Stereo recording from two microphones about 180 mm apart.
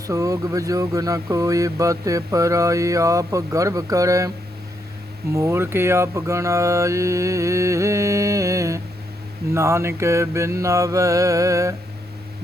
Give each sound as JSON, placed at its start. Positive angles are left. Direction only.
{"t": 0.1, "sound": "speech", "side_deg": -20}
{"t": 5.3, "sound": "speech", "side_deg": -15}